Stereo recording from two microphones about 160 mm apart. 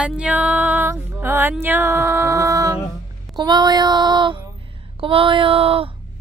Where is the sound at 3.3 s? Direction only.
25° right (ahead or behind).